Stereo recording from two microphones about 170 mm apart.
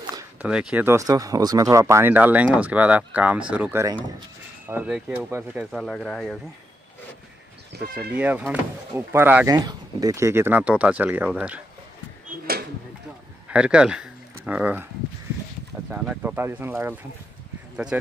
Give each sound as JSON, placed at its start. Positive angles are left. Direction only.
{"t": 0.0, "sound": "a sound", "side_deg": -20}
{"t": 0.4, "sound": "speech", "side_deg": -5}
{"t": 8.2, "sound": "speech", "side_deg": -10}
{"t": 9.5, "sound": "speech", "side_deg": -20}
{"t": 13.5, "sound": "speech", "side_deg": -5}
{"t": 15.9, "sound": "speech", "side_deg": -10}